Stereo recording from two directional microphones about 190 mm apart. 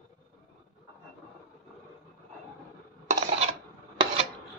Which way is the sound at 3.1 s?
35° right (ahead or behind).